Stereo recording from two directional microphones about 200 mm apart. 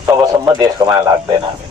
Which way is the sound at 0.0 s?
20° right (ahead or behind).